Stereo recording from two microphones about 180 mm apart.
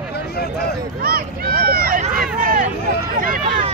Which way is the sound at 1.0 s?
55° right (ahead or behind).